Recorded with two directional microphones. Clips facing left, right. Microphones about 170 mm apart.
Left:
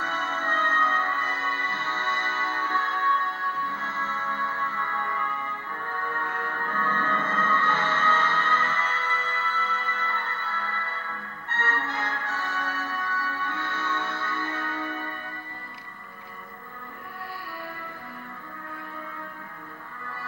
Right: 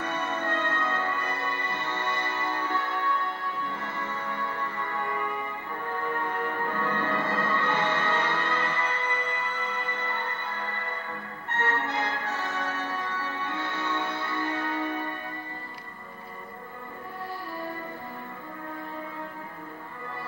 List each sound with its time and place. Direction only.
0.0 s music: 15° right (ahead or behind)